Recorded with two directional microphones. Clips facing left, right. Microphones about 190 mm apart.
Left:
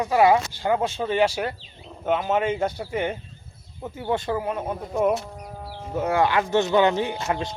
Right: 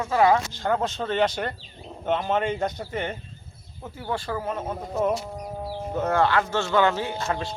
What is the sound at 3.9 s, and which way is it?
Speech, 20° left (ahead or behind).